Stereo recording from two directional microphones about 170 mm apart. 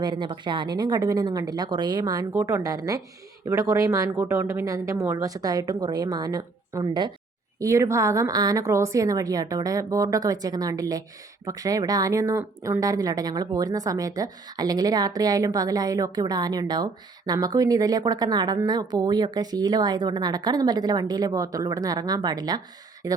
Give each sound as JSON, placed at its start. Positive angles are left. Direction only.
{"t": 0.0, "sound": "speech", "side_deg": -25}